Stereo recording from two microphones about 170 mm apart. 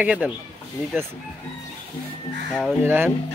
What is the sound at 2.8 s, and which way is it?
Speech, 15° right (ahead or behind).